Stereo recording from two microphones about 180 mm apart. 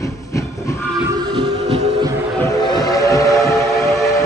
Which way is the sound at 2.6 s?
20° left (ahead or behind).